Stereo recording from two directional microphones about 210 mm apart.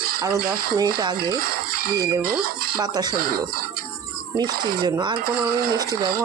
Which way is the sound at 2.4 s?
45° right (ahead or behind).